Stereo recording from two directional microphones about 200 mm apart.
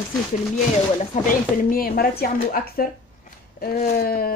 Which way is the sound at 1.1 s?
40° left (ahead or behind).